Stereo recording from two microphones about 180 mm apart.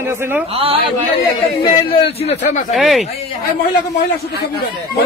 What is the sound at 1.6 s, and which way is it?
A man's voice, 30° left (ahead or behind).